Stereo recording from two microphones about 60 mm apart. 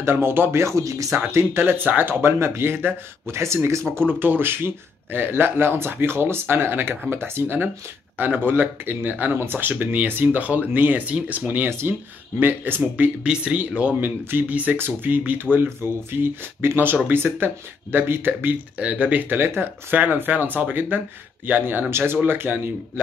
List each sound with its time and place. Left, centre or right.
0.0 s speech: right
1.1 s speech: right
4.1 s speech: right